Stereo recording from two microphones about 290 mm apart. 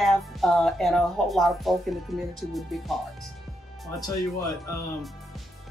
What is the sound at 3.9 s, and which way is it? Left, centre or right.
Speech, centre.